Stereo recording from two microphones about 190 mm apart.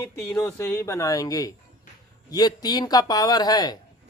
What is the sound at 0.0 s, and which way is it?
Speech, 15° left (ahead or behind).